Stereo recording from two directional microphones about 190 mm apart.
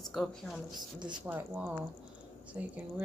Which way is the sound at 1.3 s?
10° right (ahead or behind).